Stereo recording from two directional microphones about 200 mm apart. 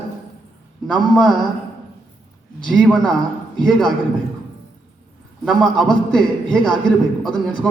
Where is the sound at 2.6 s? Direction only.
5° left (ahead or behind).